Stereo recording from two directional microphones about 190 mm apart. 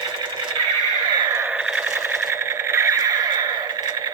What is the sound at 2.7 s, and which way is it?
Neigh, 15° right (ahead or behind).